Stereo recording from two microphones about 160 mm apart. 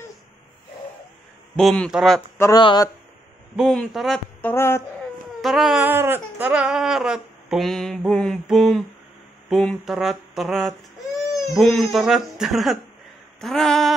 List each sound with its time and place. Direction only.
1.6 s speech: centre (ahead or behind)
2.3 s speech: 15° left (ahead or behind)
3.5 s speech: centre (ahead or behind)
4.4 s speech: 15° left (ahead or behind)
5.4 s speech: centre (ahead or behind)
5.9 s speech: 15° right (ahead or behind); by 13.9 s centre (ahead or behind)